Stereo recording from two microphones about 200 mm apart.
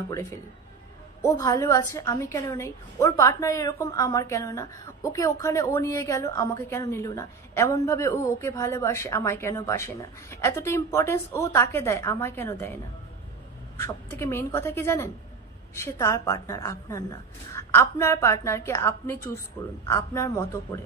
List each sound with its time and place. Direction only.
0.1 s a woman's voice: 15° left (ahead or behind)
13.7 s a woman's voice: 15° left (ahead or behind)